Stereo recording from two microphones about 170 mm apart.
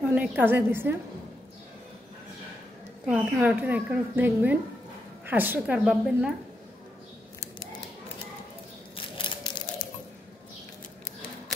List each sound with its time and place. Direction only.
0.1 s a woman's voice: 10° right (ahead or behind)
3.1 s a woman's voice: 10° right (ahead or behind)
8.9 s a sound: 30° left (ahead or behind)